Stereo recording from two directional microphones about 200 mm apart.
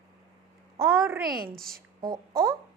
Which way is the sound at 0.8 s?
15° right (ahead or behind).